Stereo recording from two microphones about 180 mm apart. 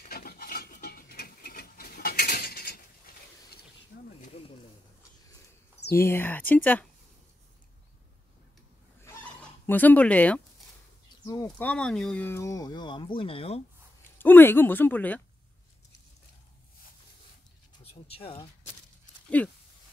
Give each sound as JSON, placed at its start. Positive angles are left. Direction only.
{"t": 0.0, "sound": "a sound", "side_deg": 55}
{"t": 5.9, "sound": "speech", "side_deg": 15}
{"t": 9.7, "sound": "speech", "side_deg": 10}
{"t": 11.2, "sound": "speech", "side_deg": 20}
{"t": 11.5, "sound": "speech", "side_deg": 5}
{"t": 14.1, "sound": "speech", "side_deg": 10}
{"t": 18.0, "sound": "speech", "side_deg": 30}
{"t": 19.4, "sound": "speech", "side_deg": 5}